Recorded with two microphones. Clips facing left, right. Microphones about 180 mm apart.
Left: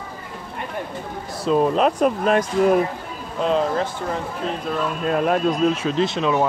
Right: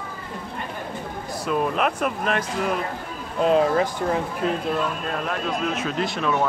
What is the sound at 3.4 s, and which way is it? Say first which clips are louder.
Speech: right 2 dB; 5° right (ahead or behind).